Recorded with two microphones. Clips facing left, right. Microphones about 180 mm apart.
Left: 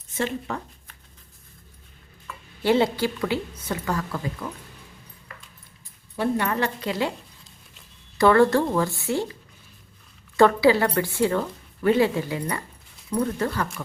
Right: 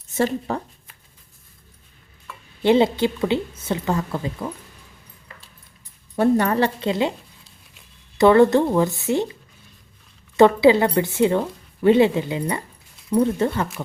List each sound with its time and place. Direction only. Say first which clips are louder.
0.2 s speech: right 6 dB; 35° right (ahead or behind)
2.6 s a woman's voice: right 4 dB; 20° right (ahead or behind)
6.1 s a woman's voice: right 6 dB; 40° right (ahead or behind); by 7.1 s 25° right (ahead or behind)
8.2 s a woman's voice: right 4 dB; 20° right (ahead or behind)
10.3 s a woman's voice: right 4 dB; 20° right (ahead or behind)